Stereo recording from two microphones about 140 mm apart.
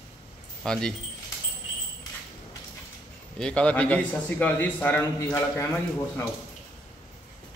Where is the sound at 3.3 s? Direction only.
10° left (ahead or behind).